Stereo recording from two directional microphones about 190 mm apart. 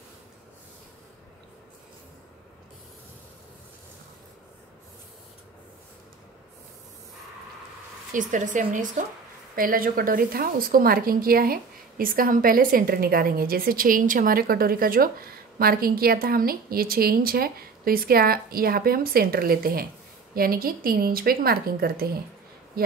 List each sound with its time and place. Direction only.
8.1 s a woman's voice: 40° right (ahead or behind)